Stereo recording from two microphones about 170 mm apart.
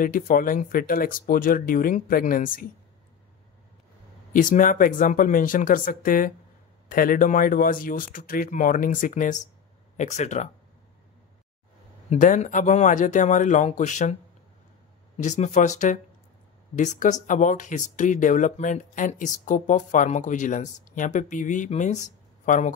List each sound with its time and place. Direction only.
0.0 s speech: 55° left (ahead or behind)
4.3 s speech: 50° left (ahead or behind)
12.1 s speech: 45° left (ahead or behind)
15.2 s speech: 45° left (ahead or behind)